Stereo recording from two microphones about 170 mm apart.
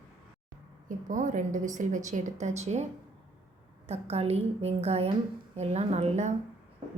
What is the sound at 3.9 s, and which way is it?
A woman's voice, 40° right (ahead or behind).